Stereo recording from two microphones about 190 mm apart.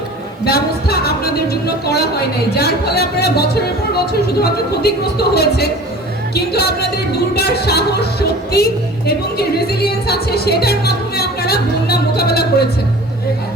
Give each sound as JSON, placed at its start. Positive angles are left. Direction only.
{"t": 0.4, "sound": "speech", "side_deg": 55}